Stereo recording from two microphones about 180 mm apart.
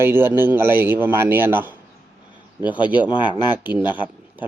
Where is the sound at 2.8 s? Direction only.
25° left (ahead or behind).